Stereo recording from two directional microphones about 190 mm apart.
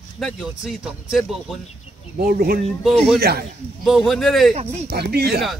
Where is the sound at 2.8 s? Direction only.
Centre (ahead or behind).